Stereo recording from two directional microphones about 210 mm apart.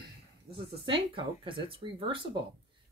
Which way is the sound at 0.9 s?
25° right (ahead or behind).